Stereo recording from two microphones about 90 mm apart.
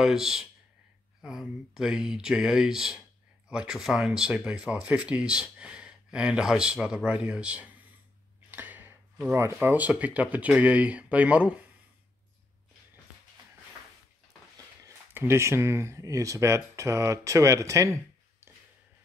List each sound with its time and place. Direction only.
0.0 s speech: 5° right (ahead or behind)
8.5 s a sound: 20° right (ahead or behind)
9.3 s speech: 25° right (ahead or behind)
15.1 s speech: 30° right (ahead or behind)